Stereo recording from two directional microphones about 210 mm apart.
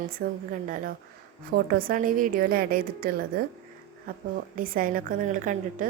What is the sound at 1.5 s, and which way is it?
A woman's voice, 45° right (ahead or behind).